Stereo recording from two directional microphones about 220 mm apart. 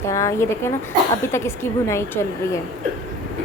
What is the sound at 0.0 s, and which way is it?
A woman's voice, 15° left (ahead or behind).